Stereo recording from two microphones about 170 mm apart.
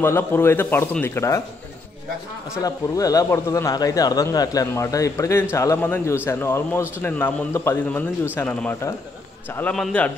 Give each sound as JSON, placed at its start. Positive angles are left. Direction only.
{"t": 0.0, "sound": "a man's voice", "side_deg": 15}
{"t": 2.6, "sound": "a man's voice", "side_deg": 20}